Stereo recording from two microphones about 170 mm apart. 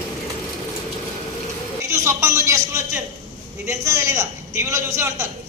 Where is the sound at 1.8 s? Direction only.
20° right (ahead or behind).